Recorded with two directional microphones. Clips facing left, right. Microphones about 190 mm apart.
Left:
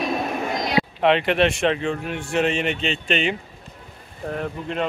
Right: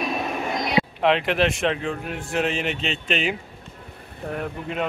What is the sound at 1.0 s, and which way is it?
A man's voice, centre (ahead or behind).